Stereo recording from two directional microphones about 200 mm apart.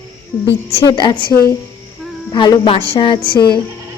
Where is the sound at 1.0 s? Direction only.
25° left (ahead or behind).